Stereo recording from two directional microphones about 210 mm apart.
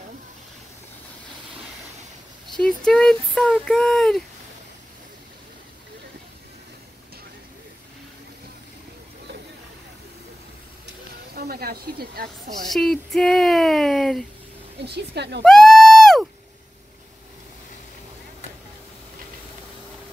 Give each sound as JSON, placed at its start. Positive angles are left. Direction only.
{"t": 2.4, "sound": "speech", "side_deg": 0}
{"t": 11.3, "sound": "speech", "side_deg": -45}
{"t": 12.5, "sound": "speech", "side_deg": 0}
{"t": 14.9, "sound": "a woman's voice", "side_deg": -50}
{"t": 15.4, "sound": "a sound", "side_deg": 0}